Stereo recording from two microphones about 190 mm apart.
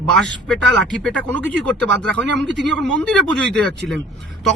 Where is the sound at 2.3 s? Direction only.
70° right (ahead or behind).